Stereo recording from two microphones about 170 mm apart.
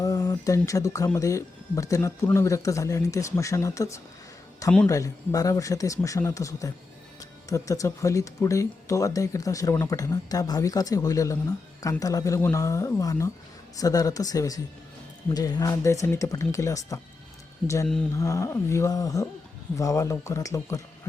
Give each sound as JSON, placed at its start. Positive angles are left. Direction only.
{"t": 0.0, "sound": "speech", "side_deg": 20}
{"t": 17.8, "sound": "speech", "side_deg": 5}
{"t": 18.2, "sound": "a sound", "side_deg": 20}